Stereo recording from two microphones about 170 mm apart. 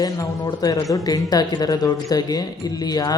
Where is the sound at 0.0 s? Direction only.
25° left (ahead or behind).